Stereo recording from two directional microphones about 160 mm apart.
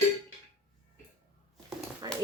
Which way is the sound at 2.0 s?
25° right (ahead or behind).